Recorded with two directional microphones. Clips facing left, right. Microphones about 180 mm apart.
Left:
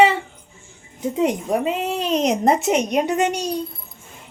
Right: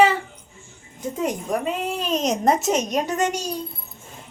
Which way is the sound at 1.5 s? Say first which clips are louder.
Left 3 dB; 25° left (ahead or behind).